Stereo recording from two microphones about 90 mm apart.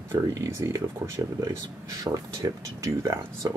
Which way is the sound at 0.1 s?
30° right (ahead or behind).